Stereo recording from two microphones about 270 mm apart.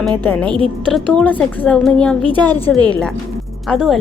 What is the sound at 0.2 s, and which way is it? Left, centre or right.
A woman's voice, centre.